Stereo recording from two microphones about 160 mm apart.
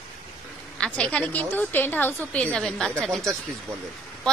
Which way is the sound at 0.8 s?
5° left (ahead or behind).